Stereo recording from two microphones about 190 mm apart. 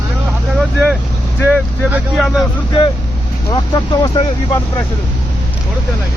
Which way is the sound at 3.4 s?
25° left (ahead or behind).